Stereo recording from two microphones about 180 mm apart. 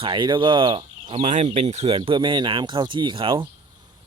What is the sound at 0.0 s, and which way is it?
Speech, 25° right (ahead or behind).